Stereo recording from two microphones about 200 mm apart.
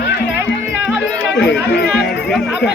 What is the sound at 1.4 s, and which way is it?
Music, 55° left (ahead or behind).